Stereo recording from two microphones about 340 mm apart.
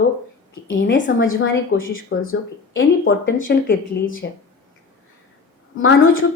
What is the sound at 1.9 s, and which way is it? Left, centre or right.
Speech, left.